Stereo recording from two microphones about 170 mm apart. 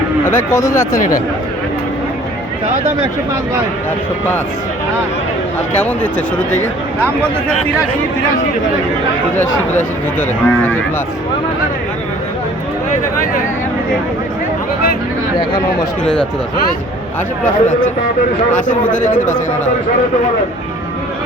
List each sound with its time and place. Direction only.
0.3 s speech: 15° left (ahead or behind)
5.8 s speech: 10° left (ahead or behind)
9.3 s speech: 10° left (ahead or behind)
17.4 s speech: 50° left (ahead or behind)
19.0 s speech: 50° left (ahead or behind)